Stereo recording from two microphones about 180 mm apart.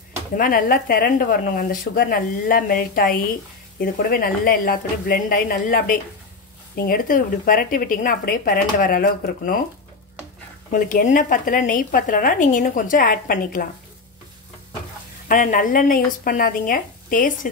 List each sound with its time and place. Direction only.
0.4 s speech: 55° left (ahead or behind)
10.7 s speech: 50° left (ahead or behind)
15.2 s speech: 50° left (ahead or behind)